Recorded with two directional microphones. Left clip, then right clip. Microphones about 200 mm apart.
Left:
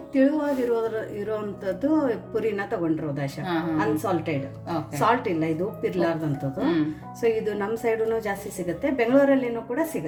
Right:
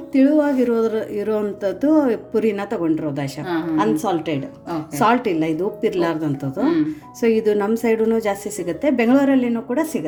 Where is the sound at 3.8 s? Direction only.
45° right (ahead or behind).